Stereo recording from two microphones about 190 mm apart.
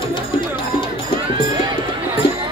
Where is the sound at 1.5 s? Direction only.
20° right (ahead or behind).